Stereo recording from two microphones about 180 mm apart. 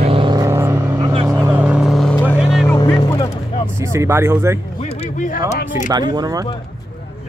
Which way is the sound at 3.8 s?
15° right (ahead or behind).